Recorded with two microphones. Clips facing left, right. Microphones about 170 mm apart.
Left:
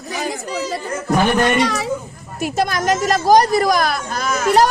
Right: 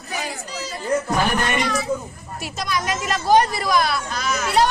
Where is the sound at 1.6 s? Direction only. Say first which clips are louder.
Left 4 dB; 90° left.